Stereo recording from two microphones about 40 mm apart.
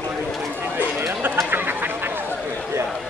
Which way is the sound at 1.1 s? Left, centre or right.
Right.